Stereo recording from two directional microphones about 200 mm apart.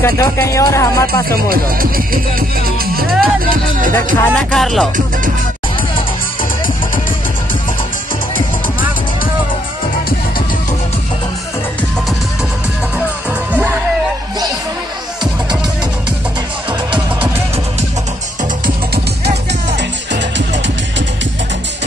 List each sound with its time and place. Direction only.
0.0 s music: 15° left (ahead or behind)
1.3 s speech: 45° right (ahead or behind)
2.8 s music: 50° right (ahead or behind)
4.4 s music: centre (ahead or behind)